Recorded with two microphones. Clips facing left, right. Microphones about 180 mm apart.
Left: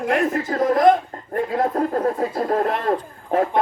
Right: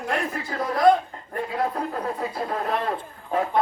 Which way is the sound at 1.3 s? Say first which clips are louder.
Left 5 dB; 45° left (ahead or behind).